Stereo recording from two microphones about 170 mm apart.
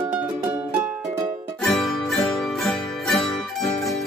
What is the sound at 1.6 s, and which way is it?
Music, centre (ahead or behind).